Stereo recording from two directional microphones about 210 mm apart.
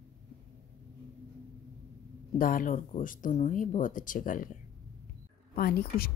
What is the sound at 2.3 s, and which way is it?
Speech, 40° left (ahead or behind).